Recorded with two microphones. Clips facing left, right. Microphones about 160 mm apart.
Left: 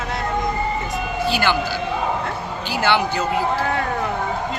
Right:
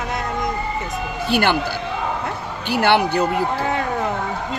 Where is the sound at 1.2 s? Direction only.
55° right (ahead or behind).